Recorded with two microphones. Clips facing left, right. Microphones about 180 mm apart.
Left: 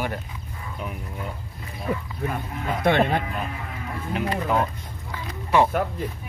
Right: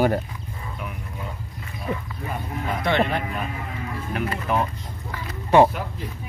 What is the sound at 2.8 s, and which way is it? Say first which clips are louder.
Speech: left 2 dB; 55° left (ahead or behind).